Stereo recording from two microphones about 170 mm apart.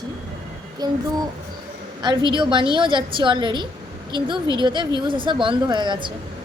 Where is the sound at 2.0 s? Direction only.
25° right (ahead or behind).